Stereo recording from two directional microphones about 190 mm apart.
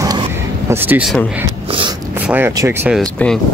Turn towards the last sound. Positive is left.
turn(degrees=5)  # may be behind; listen again after turning